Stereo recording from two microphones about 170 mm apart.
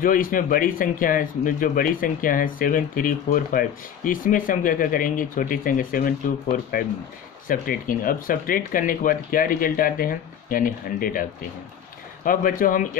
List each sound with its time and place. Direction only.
0.0 s speech: 55° left (ahead or behind)
12.3 s speech: 55° left (ahead or behind)